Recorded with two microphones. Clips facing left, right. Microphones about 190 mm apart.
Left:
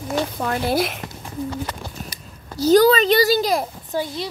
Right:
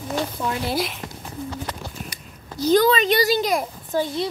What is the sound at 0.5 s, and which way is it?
Speech, 55° left (ahead or behind).